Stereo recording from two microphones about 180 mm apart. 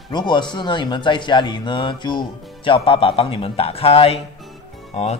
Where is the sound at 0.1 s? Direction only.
25° left (ahead or behind).